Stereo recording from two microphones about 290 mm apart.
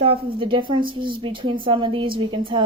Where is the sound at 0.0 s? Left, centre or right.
Centre.